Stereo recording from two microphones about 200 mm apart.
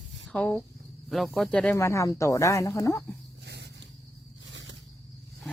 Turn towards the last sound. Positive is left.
turn(degrees=-65)  # may be behind; listen again after turning